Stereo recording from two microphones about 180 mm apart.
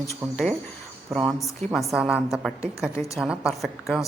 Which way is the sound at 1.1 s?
Centre (ahead or behind).